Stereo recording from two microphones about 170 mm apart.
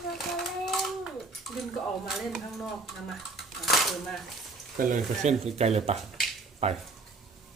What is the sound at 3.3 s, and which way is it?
Dishes, centre (ahead or behind).